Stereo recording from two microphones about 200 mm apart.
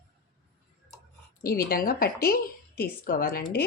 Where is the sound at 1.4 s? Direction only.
45° left (ahead or behind).